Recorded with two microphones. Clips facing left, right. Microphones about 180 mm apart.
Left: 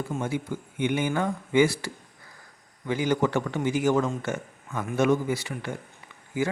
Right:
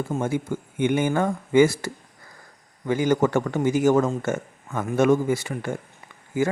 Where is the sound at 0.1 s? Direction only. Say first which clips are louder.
Right 4 dB; 45° right (ahead or behind).